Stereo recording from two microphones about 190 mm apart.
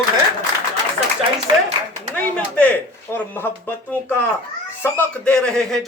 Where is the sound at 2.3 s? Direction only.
5° left (ahead or behind).